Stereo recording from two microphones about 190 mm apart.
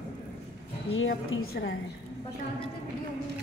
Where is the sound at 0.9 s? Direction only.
90° left.